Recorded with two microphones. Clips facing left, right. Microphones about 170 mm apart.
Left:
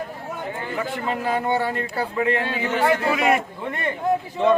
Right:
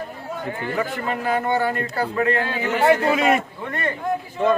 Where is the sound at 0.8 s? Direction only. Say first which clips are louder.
Even; 20° left (ahead or behind).